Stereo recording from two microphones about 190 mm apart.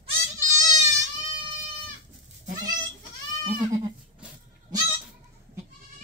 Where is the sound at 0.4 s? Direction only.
15° right (ahead or behind).